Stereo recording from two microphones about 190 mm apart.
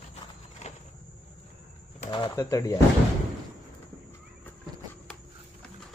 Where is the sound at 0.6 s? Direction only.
35° left (ahead or behind).